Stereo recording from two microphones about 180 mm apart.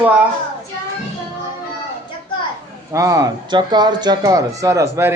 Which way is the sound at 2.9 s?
20° right (ahead or behind).